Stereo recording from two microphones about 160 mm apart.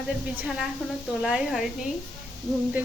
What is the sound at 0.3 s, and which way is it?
A woman's voice, 5° right (ahead or behind).